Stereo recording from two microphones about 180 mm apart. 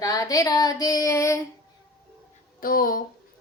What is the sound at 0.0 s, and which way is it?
Child singing, 20° left (ahead or behind).